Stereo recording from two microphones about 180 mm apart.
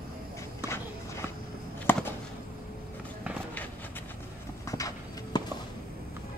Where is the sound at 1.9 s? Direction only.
10° left (ahead or behind).